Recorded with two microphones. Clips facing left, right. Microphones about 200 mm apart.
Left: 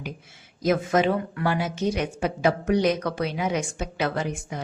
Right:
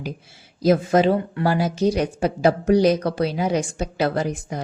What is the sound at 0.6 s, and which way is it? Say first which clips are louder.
Speech: right 5 dB; 35° right (ahead or behind).